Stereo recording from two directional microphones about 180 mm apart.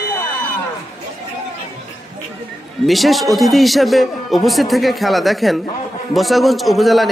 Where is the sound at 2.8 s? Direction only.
Centre (ahead or behind).